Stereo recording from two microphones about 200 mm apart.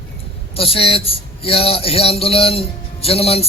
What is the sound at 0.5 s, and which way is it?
A man's voice, 30° left (ahead or behind).